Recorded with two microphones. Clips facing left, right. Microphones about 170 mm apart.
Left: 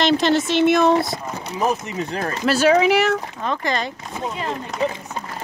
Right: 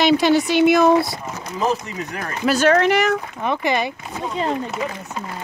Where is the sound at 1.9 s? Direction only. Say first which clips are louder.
Left 4 dB; 25° left (ahead or behind).